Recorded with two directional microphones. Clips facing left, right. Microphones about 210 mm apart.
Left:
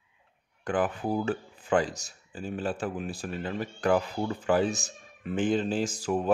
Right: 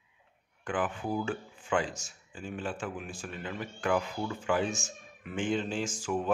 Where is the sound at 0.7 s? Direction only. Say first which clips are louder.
Left 4 dB; 40° left (ahead or behind).